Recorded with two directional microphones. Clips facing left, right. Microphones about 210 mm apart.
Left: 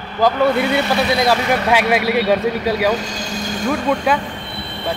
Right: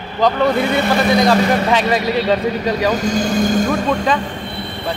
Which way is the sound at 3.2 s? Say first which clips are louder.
Right 10 dB; 55° right (ahead or behind).